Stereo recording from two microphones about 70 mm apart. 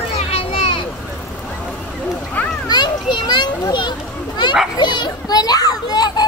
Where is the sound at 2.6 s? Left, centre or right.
Left.